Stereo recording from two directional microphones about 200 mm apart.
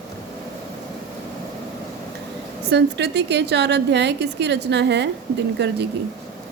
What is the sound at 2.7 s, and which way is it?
A woman's voice, 55° right (ahead or behind).